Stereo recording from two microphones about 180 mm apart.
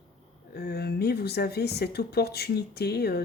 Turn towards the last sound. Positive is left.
turn(degrees=60)  # may be behind; listen again after turning